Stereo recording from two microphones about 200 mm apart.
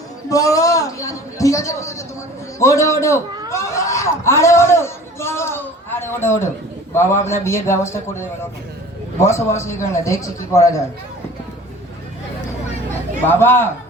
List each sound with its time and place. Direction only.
0.3 s a man's voice: 15° left (ahead or behind)
13.2 s a man's voice: 10° left (ahead or behind)